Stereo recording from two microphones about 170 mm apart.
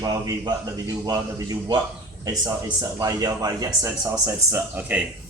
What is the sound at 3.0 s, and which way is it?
Speech, 20° right (ahead or behind).